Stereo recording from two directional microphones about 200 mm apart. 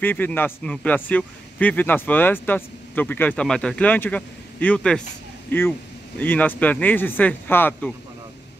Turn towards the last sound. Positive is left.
turn(degrees=10)  # may be behind; listen again after turning